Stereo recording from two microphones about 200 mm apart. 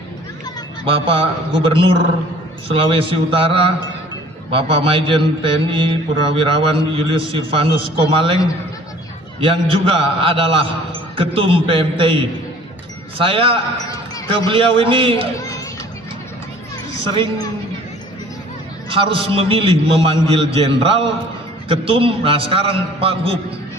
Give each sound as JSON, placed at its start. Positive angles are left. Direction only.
{"t": 0.9, "sound": "mantra", "side_deg": -25}
{"t": 9.4, "sound": "mantra", "side_deg": -25}
{"t": 13.1, "sound": "mantra", "side_deg": -25}
{"t": 15.4, "sound": "children playing", "side_deg": 15}
{"t": 18.9, "sound": "mantra", "side_deg": -25}